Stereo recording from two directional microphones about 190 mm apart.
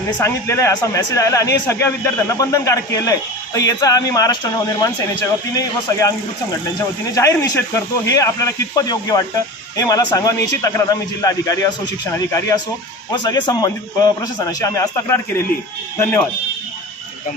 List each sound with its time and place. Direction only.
0.2 s a man's voice: 15° left (ahead or behind)